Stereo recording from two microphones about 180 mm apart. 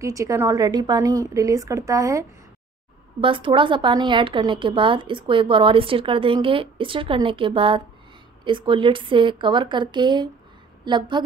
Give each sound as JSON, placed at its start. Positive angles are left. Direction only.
{"t": 0.0, "sound": "a woman's voice", "side_deg": -15}
{"t": 3.2, "sound": "a woman's voice", "side_deg": -30}